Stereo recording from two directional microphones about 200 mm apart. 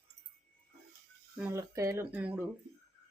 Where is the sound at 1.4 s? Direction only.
10° right (ahead or behind).